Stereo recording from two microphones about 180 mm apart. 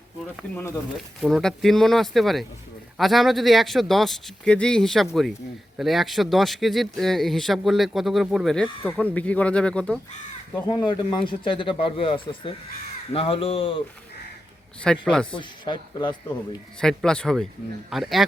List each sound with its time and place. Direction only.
0.5 s speech: 15° left (ahead or behind)
0.9 s speech: centre (ahead or behind)
10.5 s speech: 25° left (ahead or behind)
14.8 s speech: 5° left (ahead or behind)
15.4 s speech: 25° left (ahead or behind)
16.8 s speech: 5° left (ahead or behind)